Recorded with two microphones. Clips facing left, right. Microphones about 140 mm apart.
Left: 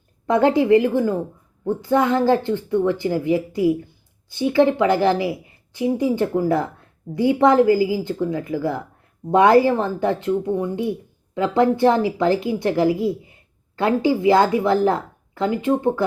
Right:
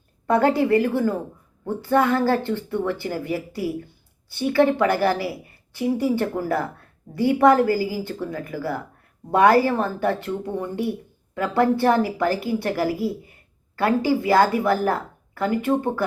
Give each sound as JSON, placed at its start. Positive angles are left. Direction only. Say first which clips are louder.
{"t": 0.3, "sound": "a woman's voice", "louder": "left 3 dB", "side_deg": 15}